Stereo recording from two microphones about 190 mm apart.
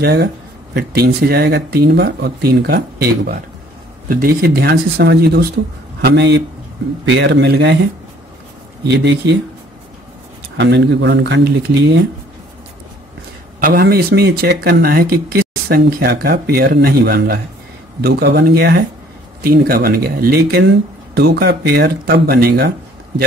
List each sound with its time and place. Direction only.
0.0 s speech: 55° right (ahead or behind)
8.8 s speech: 60° right (ahead or behind)
10.6 s speech: 65° right (ahead or behind)
13.6 s speech: 50° right (ahead or behind)